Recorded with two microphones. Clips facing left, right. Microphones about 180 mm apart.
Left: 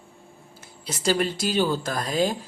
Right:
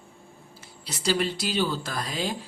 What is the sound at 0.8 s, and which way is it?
Speech, 50° left (ahead or behind).